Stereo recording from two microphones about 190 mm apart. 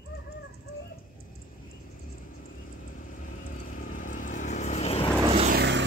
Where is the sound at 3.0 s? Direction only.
45° left (ahead or behind).